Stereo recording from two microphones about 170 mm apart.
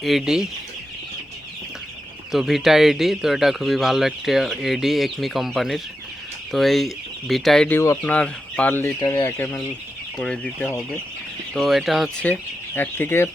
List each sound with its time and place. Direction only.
0.0 s speech: centre (ahead or behind)
2.3 s speech: centre (ahead or behind)
12.2 s speech: 10° left (ahead or behind)